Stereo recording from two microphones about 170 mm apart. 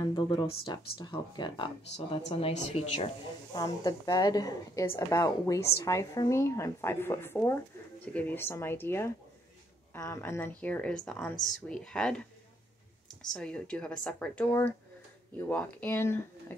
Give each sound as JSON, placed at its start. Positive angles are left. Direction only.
{"t": 0.0, "sound": "a woman's voice", "side_deg": 25}
{"t": 2.2, "sound": "a woman's voice", "side_deg": 40}
{"t": 3.5, "sound": "a woman's voice", "side_deg": 25}